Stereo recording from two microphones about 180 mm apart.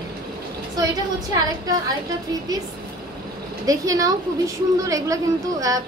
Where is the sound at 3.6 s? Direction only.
20° right (ahead or behind).